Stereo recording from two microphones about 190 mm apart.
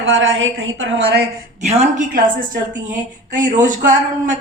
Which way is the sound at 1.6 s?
35° right (ahead or behind).